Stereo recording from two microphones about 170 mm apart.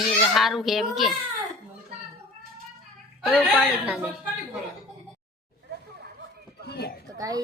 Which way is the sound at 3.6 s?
5° right (ahead or behind).